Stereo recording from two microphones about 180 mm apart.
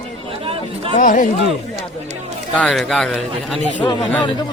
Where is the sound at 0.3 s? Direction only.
30° right (ahead or behind).